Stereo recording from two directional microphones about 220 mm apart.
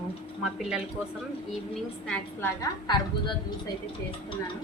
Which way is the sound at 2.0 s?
5° left (ahead or behind).